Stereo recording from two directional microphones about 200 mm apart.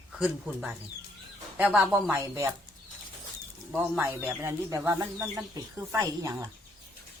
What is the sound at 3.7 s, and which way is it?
Speech, 10° right (ahead or behind).